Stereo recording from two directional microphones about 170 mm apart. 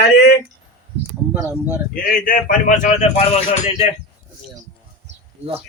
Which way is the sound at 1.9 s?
55° left (ahead or behind).